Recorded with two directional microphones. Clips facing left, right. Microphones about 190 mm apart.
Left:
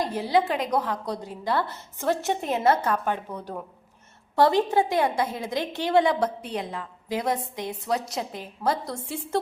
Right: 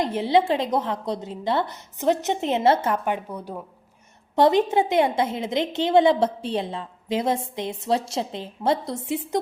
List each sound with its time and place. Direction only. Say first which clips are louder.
0.0 s a woman's voice: right 3 dB; 25° right (ahead or behind)
4.4 s a woman's voice: right 2 dB; 20° right (ahead or behind)